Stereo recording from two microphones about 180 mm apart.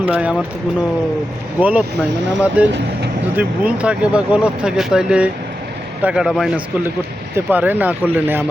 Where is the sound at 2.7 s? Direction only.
75° right (ahead or behind).